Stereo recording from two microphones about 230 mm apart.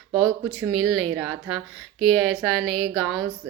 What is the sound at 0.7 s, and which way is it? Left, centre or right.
A woman's voice, centre.